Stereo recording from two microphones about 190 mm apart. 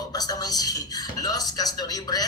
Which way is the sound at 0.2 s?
20° left (ahead or behind).